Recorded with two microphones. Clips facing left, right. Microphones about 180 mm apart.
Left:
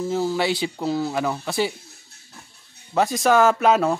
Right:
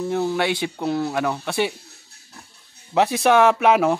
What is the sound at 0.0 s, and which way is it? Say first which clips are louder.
Speech: right 1 dB; 5° left (ahead or behind).